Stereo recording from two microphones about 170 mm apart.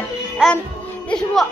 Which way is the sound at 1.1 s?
5° left (ahead or behind).